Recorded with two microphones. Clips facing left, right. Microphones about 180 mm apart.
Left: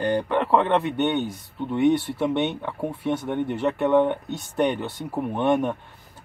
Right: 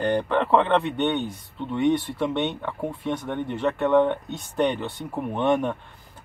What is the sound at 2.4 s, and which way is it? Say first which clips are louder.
Speech: left 1 dB; 20° left (ahead or behind).